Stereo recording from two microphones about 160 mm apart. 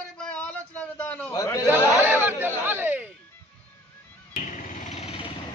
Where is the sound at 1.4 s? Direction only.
20° left (ahead or behind).